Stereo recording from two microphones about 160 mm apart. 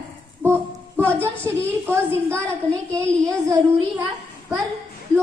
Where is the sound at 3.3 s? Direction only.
20° right (ahead or behind).